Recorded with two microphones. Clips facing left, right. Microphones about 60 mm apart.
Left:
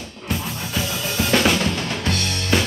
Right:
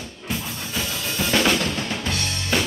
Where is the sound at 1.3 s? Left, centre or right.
Centre.